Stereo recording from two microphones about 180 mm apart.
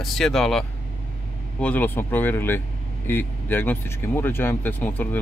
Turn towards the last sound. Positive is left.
turn(degrees=10)  # may be behind; listen again after turning